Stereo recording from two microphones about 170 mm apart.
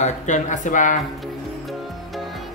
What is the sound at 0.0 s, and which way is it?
Speech, 45° left (ahead or behind).